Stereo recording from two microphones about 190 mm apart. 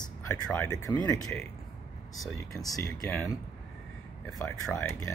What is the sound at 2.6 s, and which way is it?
Speech, 20° left (ahead or behind).